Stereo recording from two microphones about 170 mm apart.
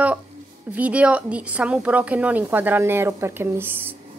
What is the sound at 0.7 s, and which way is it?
A woman's voice, 10° right (ahead or behind).